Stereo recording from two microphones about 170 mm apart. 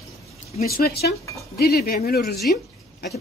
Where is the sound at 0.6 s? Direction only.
60° left (ahead or behind).